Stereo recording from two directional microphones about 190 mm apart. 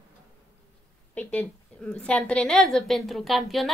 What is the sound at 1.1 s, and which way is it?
A woman's voice, 5° left (ahead or behind).